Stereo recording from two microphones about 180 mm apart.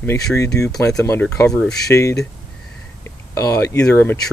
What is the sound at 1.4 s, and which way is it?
Speech, 5° left (ahead or behind).